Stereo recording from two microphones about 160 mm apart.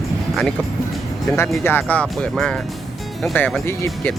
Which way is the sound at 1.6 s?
10° left (ahead or behind).